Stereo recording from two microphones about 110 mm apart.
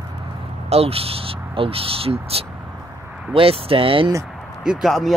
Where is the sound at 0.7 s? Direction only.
65° right (ahead or behind).